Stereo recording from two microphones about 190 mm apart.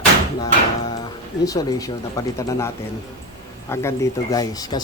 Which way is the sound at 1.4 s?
20° left (ahead or behind).